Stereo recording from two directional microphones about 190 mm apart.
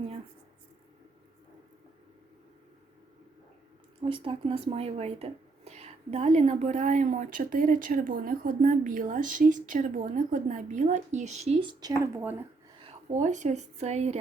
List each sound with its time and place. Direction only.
4.0 s speech: 30° right (ahead or behind); by 12.4 s 10° right (ahead or behind)
12.8 s a woman's voice: 35° right (ahead or behind)